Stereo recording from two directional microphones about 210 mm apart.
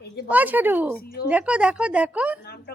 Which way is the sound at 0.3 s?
10° right (ahead or behind).